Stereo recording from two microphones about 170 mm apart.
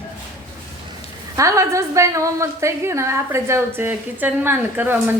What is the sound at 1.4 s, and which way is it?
A woman's voice, 20° right (ahead or behind).